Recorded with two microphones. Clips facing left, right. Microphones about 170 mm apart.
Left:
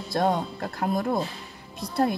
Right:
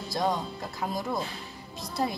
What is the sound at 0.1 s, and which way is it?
A woman's voice, 60° left (ahead or behind).